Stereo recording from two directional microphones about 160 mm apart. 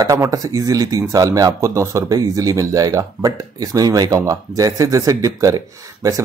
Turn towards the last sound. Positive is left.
turn(degrees=-20)  # may be behind; listen again after turning